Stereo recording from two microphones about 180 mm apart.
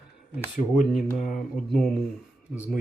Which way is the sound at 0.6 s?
20° left (ahead or behind).